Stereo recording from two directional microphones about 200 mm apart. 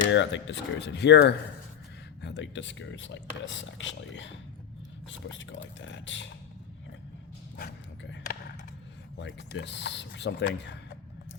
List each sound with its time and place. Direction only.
0.1 s speech: 65° left (ahead or behind)
7.5 s dog: 55° left (ahead or behind)
9.1 s speech: 60° left (ahead or behind)